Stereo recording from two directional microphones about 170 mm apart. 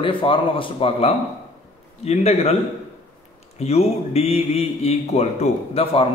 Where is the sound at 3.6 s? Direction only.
35° left (ahead or behind).